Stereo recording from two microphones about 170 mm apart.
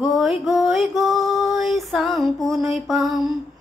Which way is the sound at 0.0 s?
Centre (ahead or behind).